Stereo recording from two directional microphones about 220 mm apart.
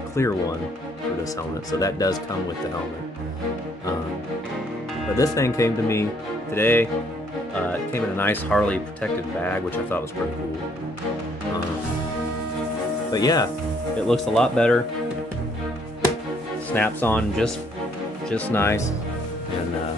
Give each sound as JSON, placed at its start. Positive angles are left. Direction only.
{"t": 0.1, "sound": "speech", "side_deg": 15}
{"t": 5.1, "sound": "speech", "side_deg": 15}
{"t": 13.1, "sound": "speech", "side_deg": 15}
{"t": 14.0, "sound": "speech", "side_deg": 0}
{"t": 16.7, "sound": "speech", "side_deg": 10}